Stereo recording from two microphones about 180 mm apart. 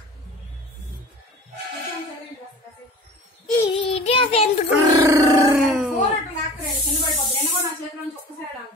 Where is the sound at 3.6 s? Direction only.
30° left (ahead or behind).